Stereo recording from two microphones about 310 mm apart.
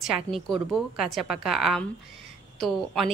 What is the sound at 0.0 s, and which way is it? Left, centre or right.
A woman's voice, centre.